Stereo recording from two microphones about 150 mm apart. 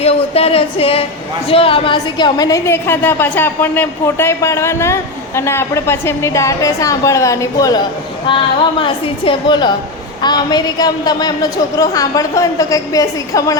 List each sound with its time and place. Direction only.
0.0 s a sound: 40° left (ahead or behind)
1.5 s a woman's voice: 40° left (ahead or behind); by 7.8 s 20° left (ahead or behind)
8.3 s a woman's voice: 35° left (ahead or behind)